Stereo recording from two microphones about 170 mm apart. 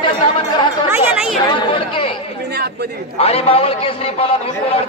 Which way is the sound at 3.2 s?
35° left (ahead or behind).